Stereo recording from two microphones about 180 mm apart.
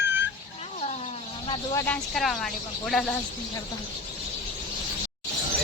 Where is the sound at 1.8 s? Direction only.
5° left (ahead or behind).